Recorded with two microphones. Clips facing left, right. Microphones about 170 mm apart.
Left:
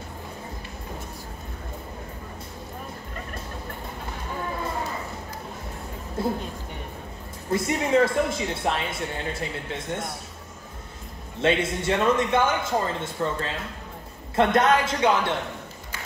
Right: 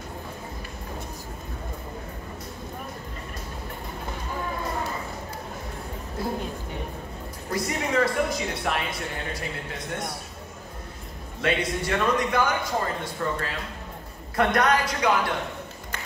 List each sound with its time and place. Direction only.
7.5 s speech: 25° left (ahead or behind)
11.4 s speech: 25° left (ahead or behind)